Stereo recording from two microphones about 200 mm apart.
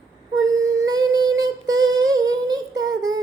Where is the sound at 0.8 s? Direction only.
20° right (ahead or behind).